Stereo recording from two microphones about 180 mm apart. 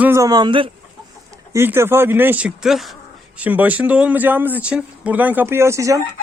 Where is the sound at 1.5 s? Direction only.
15° right (ahead or behind).